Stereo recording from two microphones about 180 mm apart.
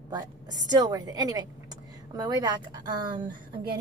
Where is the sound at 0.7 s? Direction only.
20° right (ahead or behind).